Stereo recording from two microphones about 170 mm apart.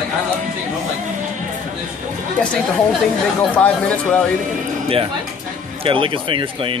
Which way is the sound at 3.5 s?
10° left (ahead or behind).